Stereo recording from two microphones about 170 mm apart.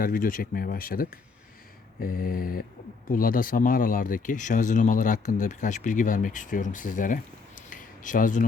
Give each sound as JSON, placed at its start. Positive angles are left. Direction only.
{"t": 0.0, "sound": "speech", "side_deg": 55}